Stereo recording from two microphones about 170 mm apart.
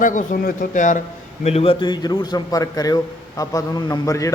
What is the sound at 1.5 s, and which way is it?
A man's voice, 35° left (ahead or behind).